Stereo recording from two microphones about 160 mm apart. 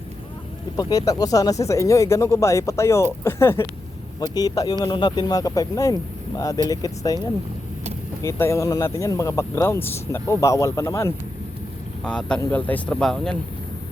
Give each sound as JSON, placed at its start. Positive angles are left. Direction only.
{"t": 0.8, "sound": "speech", "side_deg": 20}
{"t": 8.2, "sound": "speech", "side_deg": 15}
{"t": 12.0, "sound": "speech", "side_deg": 5}